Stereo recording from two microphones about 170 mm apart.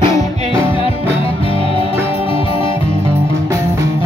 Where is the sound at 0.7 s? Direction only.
35° left (ahead or behind).